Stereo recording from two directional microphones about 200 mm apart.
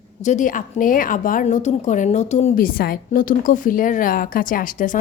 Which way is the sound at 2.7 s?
50° left (ahead or behind).